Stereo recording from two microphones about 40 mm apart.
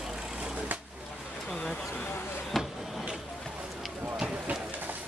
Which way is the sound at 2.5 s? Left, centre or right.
Centre.